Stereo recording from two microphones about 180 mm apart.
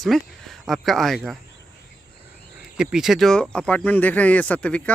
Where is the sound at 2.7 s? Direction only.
5° right (ahead or behind).